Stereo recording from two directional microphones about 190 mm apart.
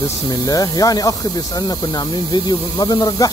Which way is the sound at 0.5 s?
20° left (ahead or behind).